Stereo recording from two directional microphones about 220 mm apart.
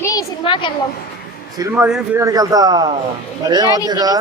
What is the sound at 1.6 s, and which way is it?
Speech, 5° right (ahead or behind).